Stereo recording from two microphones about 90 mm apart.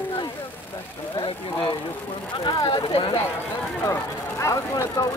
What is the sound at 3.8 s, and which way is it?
Speech, 35° left (ahead or behind).